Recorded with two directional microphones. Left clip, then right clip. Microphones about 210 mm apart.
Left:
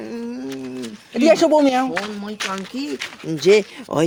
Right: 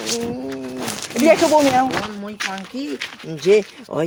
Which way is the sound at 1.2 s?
15° left (ahead or behind).